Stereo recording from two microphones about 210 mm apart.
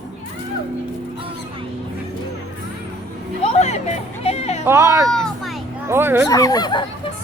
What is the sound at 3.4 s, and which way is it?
Music, 30° left (ahead or behind).